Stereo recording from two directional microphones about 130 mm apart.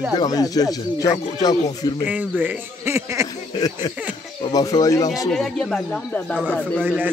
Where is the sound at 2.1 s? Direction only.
10° right (ahead or behind).